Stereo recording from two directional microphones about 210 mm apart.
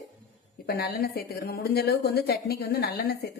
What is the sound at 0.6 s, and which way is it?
A woman's voice, 50° left (ahead or behind).